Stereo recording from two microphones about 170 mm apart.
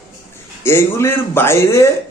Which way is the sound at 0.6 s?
15° left (ahead or behind).